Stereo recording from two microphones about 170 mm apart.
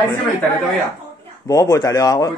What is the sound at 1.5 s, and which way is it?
Speech, 20° left (ahead or behind).